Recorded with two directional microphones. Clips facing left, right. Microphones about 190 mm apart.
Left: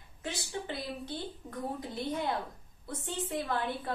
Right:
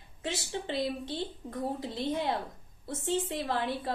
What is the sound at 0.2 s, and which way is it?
A woman's voice, 25° right (ahead or behind).